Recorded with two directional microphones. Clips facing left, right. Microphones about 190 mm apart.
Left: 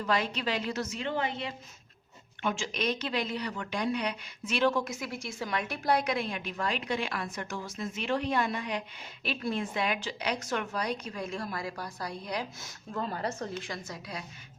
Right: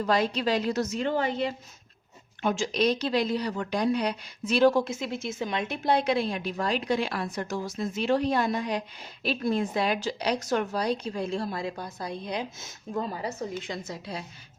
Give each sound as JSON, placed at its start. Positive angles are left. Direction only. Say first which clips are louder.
{"t": 0.0, "sound": "a woman's voice", "louder": "right 5 dB", "side_deg": -35}
{"t": 13.6, "sound": "a woman's voice", "louder": "right 4 dB", "side_deg": -25}